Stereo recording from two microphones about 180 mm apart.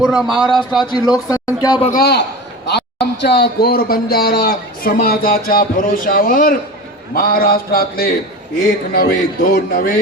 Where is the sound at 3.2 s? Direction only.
60° left (ahead or behind).